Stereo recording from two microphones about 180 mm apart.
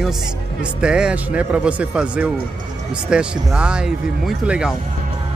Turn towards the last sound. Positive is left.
turn(degrees=-5)  # may be behind; listen again after turning